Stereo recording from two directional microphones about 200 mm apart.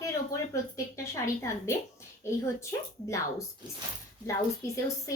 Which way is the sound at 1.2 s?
15° left (ahead or behind).